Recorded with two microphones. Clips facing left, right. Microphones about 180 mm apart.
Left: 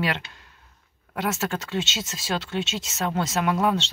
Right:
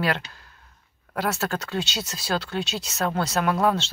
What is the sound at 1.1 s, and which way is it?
Speech, 20° left (ahead or behind).